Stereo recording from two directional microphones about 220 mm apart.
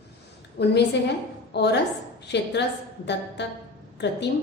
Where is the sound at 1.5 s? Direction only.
50° left (ahead or behind).